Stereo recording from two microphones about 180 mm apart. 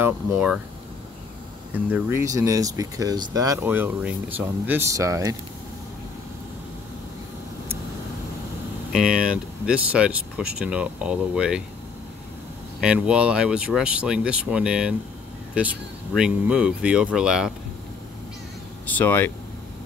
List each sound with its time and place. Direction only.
0.0 s speech: 5° right (ahead or behind)
1.9 s speech: 10° right (ahead or behind)
8.9 s speech: 5° right (ahead or behind)
12.8 s speech: 5° right (ahead or behind)
18.9 s speech: 10° left (ahead or behind)